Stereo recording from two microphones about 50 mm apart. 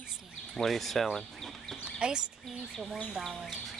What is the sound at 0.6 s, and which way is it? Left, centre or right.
Speech, centre.